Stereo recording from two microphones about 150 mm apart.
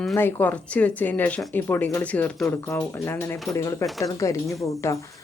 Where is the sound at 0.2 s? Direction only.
15° left (ahead or behind).